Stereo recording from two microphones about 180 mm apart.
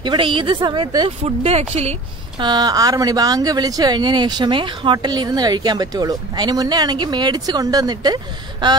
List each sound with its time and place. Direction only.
0.0 s speech: 25° right (ahead or behind)